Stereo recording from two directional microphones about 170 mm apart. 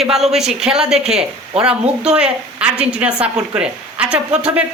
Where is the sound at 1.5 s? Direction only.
35° right (ahead or behind).